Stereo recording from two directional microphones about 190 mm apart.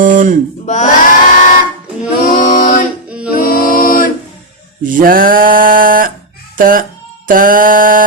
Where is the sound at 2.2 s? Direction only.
45° left (ahead or behind).